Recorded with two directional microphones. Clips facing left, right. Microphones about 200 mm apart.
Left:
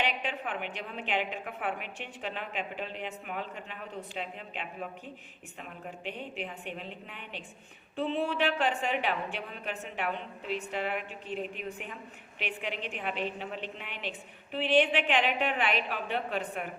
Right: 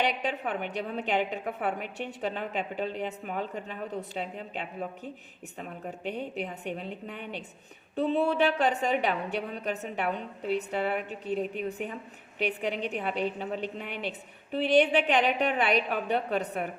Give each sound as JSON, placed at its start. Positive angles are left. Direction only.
{"t": 0.0, "sound": "a woman's voice", "side_deg": -40}